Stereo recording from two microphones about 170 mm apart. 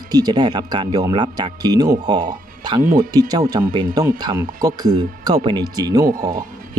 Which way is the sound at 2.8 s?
55° right (ahead or behind).